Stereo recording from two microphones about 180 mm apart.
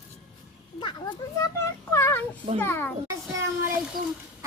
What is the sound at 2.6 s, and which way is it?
Speech, 10° left (ahead or behind).